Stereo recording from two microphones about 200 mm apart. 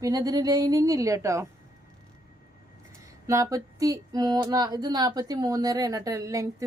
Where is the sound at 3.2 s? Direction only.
15° right (ahead or behind).